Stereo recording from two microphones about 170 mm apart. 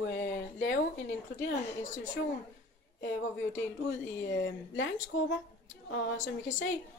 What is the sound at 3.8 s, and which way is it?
A woman's voice, 90° left.